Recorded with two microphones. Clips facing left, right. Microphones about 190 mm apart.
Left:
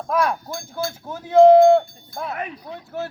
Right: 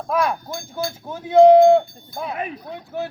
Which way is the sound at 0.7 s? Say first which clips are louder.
Even; centre (ahead or behind).